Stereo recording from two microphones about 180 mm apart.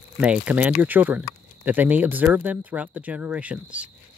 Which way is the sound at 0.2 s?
5° right (ahead or behind).